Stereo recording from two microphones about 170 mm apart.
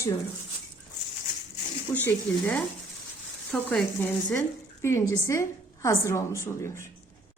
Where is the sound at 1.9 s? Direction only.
10° left (ahead or behind).